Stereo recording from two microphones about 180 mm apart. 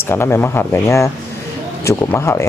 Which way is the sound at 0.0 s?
15° left (ahead or behind).